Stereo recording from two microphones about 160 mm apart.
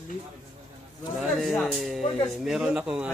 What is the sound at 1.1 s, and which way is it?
A man's voice, centre (ahead or behind).